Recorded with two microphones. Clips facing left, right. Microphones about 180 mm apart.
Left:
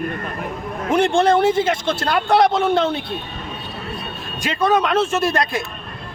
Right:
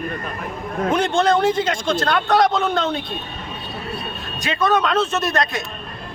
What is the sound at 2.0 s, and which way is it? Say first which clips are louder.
Speech: left 2 dB; 10° left (ahead or behind).